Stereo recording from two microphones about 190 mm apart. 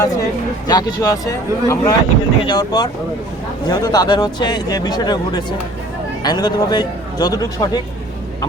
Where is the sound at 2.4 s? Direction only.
20° left (ahead or behind).